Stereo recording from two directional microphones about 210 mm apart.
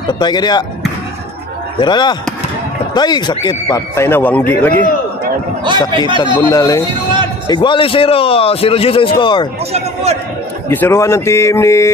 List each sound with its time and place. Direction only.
0.2 s a man's voice: 20° left (ahead or behind)
1.8 s a man's voice: 20° left (ahead or behind)
5.9 s speech: 25° right (ahead or behind)
6.5 s a man's voice: 15° left (ahead or behind)
10.7 s a man's voice: 10° left (ahead or behind)